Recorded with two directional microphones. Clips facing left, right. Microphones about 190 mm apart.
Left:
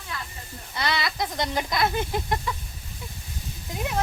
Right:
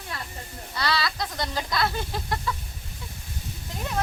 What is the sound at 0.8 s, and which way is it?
Speech, 20° left (ahead or behind).